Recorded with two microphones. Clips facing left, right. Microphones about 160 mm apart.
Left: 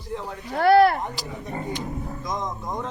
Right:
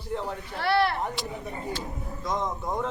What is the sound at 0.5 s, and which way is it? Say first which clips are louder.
Speech: left 9 dB; 45° left (ahead or behind).